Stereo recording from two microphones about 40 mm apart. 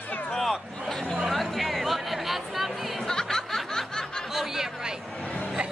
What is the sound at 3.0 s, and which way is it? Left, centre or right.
Snicker, centre.